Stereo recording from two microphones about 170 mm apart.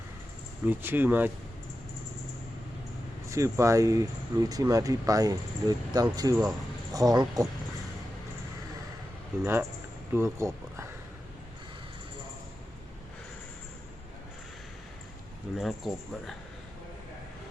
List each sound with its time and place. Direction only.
0.7 s speech: 10° right (ahead or behind)
3.2 s speech: 15° right (ahead or behind)
9.4 s speech: 10° right (ahead or behind)
15.5 s speech: centre (ahead or behind)